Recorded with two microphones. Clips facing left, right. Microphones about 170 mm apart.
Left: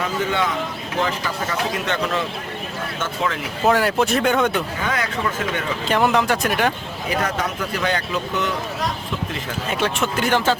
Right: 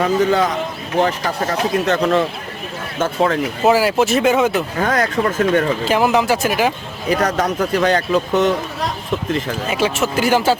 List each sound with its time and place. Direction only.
0.0 s a man's voice: 40° right (ahead or behind)
3.7 s speech: 5° right (ahead or behind)
4.8 s speech: 45° right (ahead or behind)
5.8 s speech: 5° right (ahead or behind)
7.1 s a man's voice: 40° right (ahead or behind)
9.6 s speech: 5° right (ahead or behind)